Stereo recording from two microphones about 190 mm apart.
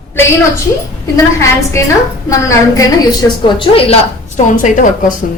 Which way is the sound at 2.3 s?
15° left (ahead or behind).